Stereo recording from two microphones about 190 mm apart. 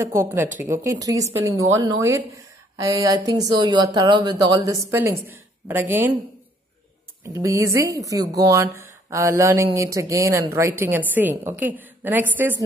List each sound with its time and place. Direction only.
0.0 s a woman's voice: 15° right (ahead or behind)
7.4 s a woman's voice: 15° right (ahead or behind)